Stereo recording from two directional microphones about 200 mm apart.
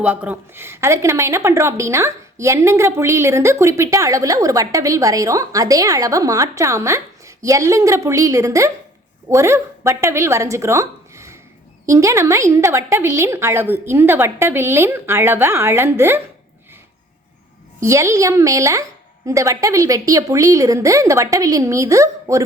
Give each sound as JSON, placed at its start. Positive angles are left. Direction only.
{"t": 0.0, "sound": "a woman's voice", "side_deg": -5}
{"t": 17.7, "sound": "a woman's voice", "side_deg": -15}